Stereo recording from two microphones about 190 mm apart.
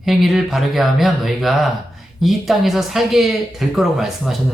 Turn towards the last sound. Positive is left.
turn(degrees=0)  # may be behind; listen again after turning